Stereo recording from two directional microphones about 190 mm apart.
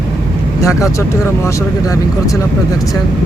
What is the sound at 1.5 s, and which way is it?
Speech, 15° left (ahead or behind).